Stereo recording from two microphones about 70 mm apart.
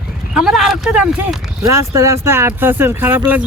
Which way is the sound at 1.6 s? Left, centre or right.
Right.